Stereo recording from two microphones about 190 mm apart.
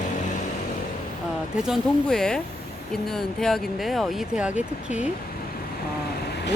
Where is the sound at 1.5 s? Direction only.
Centre (ahead or behind).